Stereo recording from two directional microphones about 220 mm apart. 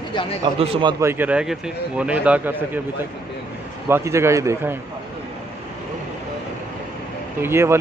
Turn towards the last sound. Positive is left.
turn(degrees=-10)  # may be behind; listen again after turning